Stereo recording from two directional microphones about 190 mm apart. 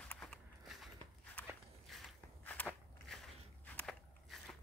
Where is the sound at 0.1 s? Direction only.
5° left (ahead or behind).